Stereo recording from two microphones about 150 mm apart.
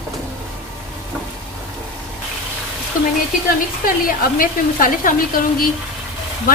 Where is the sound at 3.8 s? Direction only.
70° left (ahead or behind).